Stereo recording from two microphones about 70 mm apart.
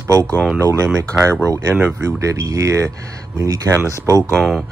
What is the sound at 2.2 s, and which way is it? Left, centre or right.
Speech, right.